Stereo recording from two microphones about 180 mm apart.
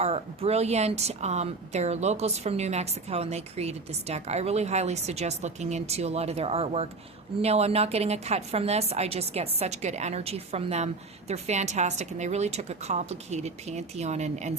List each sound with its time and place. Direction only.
0.0 s a woman's voice: 35° right (ahead or behind)